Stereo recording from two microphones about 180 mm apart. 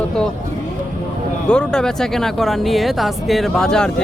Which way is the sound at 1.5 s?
5° left (ahead or behind).